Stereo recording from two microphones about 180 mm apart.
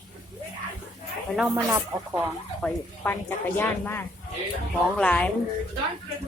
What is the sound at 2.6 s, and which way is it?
Speech, 10° left (ahead or behind).